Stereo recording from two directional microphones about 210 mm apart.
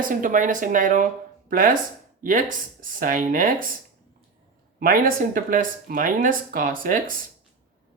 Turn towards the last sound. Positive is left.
turn(degrees=-40)  # may be behind; listen again after turning